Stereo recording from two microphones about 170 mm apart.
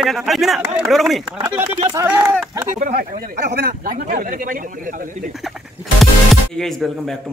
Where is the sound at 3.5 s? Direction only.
75° right (ahead or behind).